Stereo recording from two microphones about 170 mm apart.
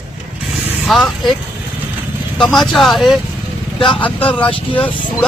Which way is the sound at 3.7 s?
30° left (ahead or behind).